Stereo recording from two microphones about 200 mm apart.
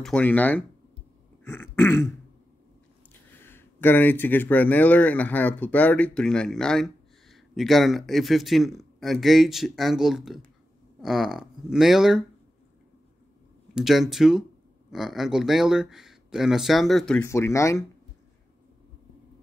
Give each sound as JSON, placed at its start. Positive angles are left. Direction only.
{"t": 0.0, "sound": "throat clearing", "side_deg": 5}
{"t": 3.1, "sound": "speech", "side_deg": 10}
{"t": 13.7, "sound": "speech", "side_deg": 0}